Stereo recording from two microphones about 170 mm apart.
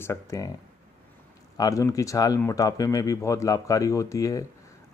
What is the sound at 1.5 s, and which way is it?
A man's voice, 20° left (ahead or behind).